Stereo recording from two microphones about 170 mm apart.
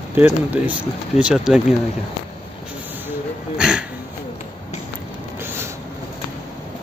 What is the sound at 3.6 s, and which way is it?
Music, 5° right (ahead or behind).